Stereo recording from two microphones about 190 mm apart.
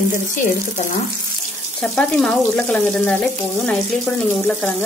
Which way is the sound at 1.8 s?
5° left (ahead or behind).